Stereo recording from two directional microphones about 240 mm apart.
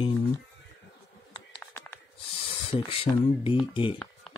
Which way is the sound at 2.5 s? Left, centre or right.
Left.